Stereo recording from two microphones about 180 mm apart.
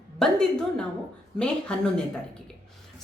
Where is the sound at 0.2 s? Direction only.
5° left (ahead or behind).